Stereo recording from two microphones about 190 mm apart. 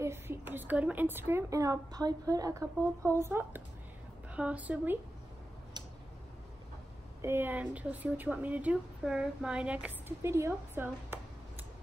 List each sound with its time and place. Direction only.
0.0 s a woman's voice: 10° right (ahead or behind)
7.2 s speech: 10° right (ahead or behind)